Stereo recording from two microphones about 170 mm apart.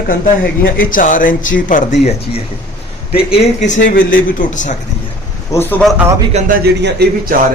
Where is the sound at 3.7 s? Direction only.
90° left.